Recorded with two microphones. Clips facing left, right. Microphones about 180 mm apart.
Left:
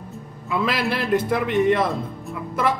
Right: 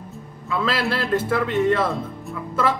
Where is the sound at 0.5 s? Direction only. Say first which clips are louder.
Even; 15° left (ahead or behind).